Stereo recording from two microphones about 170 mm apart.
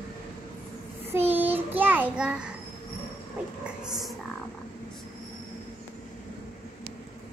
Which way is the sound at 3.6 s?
Centre (ahead or behind).